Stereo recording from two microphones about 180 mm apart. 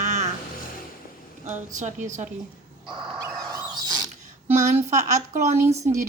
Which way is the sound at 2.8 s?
25° right (ahead or behind).